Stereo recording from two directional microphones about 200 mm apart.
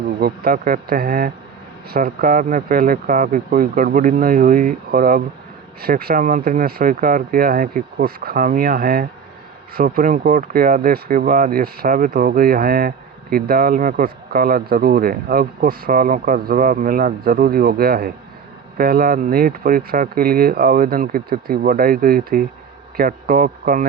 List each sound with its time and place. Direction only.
0.2 s speech: 50° right (ahead or behind)